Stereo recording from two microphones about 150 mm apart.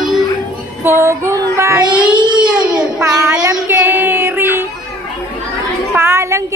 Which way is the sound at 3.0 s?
20° right (ahead or behind).